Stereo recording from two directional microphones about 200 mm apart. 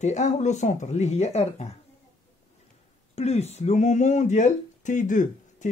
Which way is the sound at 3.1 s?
30° left (ahead or behind).